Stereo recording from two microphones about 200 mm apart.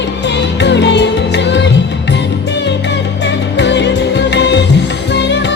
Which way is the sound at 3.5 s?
60° left (ahead or behind).